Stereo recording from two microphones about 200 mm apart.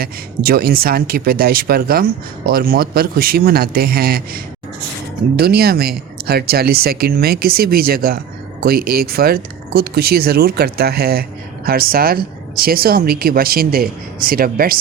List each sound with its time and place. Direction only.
0.0 s speech: 50° right (ahead or behind)
5.4 s speech: 50° right (ahead or behind)